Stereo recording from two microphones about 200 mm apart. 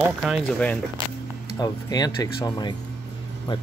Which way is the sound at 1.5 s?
20° left (ahead or behind).